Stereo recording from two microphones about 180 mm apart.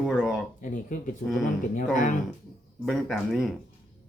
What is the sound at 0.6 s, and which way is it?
Speech, 45° left (ahead or behind).